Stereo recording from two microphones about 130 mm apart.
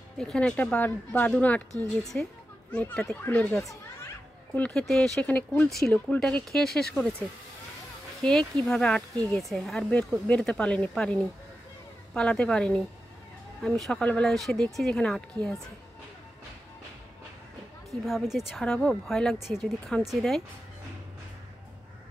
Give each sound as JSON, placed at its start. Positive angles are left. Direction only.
{"t": 0.2, "sound": "speech", "side_deg": 5}
{"t": 4.6, "sound": "speech", "side_deg": 5}
{"t": 8.2, "sound": "speech", "side_deg": 5}
{"t": 18.0, "sound": "speech", "side_deg": 0}